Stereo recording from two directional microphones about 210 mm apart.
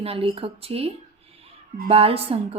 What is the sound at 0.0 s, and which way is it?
A woman's voice, 25° right (ahead or behind).